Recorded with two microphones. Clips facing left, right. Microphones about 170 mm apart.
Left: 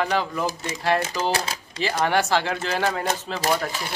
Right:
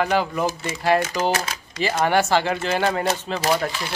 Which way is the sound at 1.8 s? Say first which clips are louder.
Right 2 dB; 5° right (ahead or behind).